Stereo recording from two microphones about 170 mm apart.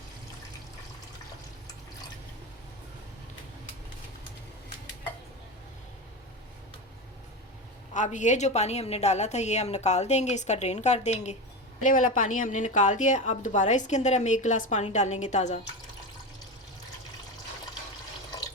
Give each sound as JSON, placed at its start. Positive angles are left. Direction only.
{"t": 7.9, "sound": "a woman's voice", "side_deg": 45}